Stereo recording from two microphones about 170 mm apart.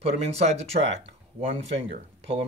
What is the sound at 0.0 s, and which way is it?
Speech, 40° right (ahead or behind).